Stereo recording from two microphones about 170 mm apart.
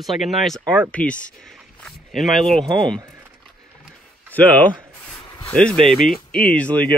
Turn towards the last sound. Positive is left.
turn(degrees=5)  # may be behind; listen again after turning